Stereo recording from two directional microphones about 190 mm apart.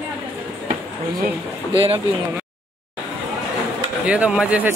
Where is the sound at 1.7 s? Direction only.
30° right (ahead or behind).